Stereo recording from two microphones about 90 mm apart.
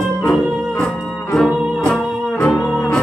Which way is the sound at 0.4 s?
5° right (ahead or behind).